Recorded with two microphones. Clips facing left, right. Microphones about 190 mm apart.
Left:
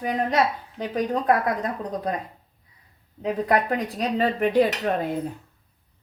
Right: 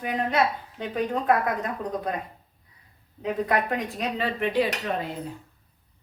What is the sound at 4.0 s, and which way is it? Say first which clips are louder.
Speech: left 5 dB; 40° left (ahead or behind).